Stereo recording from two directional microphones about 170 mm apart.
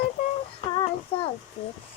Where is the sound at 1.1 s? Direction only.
35° left (ahead or behind).